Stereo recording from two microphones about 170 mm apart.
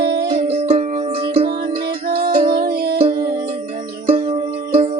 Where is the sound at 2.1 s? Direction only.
60° right (ahead or behind).